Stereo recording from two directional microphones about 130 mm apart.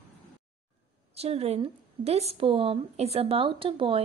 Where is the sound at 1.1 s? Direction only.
50° right (ahead or behind).